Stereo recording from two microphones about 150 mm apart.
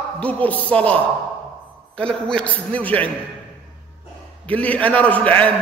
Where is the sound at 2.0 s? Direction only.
5° left (ahead or behind).